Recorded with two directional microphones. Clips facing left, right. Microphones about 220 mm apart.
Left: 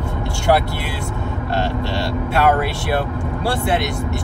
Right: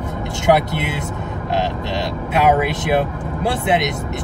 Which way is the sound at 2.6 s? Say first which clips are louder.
Right 3 dB; 20° right (ahead or behind).